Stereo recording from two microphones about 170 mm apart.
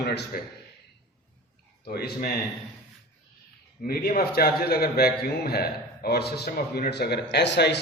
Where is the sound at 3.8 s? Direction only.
55° left (ahead or behind); by 7.8 s 80° left.